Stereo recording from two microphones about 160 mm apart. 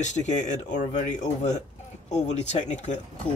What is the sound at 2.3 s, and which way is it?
Speech, 45° left (ahead or behind).